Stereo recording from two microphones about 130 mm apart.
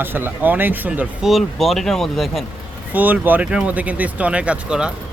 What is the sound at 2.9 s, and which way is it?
Speech, 15° right (ahead or behind).